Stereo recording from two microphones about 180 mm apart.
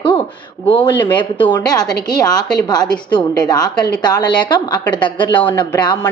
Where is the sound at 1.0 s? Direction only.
25° left (ahead or behind).